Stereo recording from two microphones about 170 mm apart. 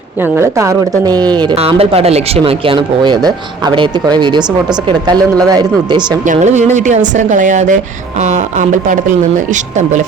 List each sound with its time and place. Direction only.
0.2 s a woman's voice: 15° right (ahead or behind)
6.2 s speech: 45° right (ahead or behind)